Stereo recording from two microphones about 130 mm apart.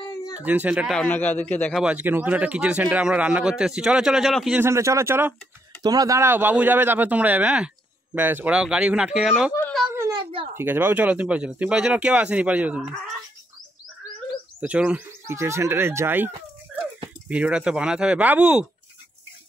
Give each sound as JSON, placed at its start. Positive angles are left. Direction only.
{"t": 0.4, "sound": "speech", "side_deg": -10}
{"t": 1.0, "sound": "a man's voice", "side_deg": 15}
{"t": 1.8, "sound": "speech", "side_deg": -10}
{"t": 4.6, "sound": "speech", "side_deg": -20}
{"t": 5.8, "sound": "speech", "side_deg": -30}
{"t": 10.5, "sound": "speech", "side_deg": -15}
{"t": 14.6, "sound": "speech", "side_deg": -10}